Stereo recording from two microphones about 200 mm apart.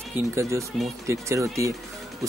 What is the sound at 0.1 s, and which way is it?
Speech, 15° right (ahead or behind).